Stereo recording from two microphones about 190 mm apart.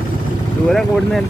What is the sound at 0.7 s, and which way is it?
Speech, centre (ahead or behind).